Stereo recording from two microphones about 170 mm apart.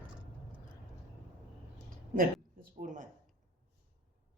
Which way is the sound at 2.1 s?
55° right (ahead or behind).